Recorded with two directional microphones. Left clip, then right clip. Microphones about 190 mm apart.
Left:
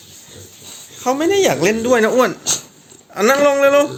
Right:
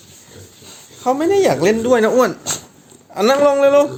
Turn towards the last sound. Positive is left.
turn(degrees=-10)  # may be behind; listen again after turning